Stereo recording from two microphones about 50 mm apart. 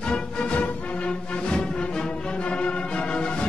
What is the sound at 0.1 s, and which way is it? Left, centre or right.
Music, left.